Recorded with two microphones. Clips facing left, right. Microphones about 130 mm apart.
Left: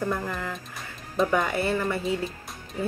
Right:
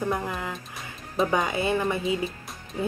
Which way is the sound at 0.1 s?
15° right (ahead or behind).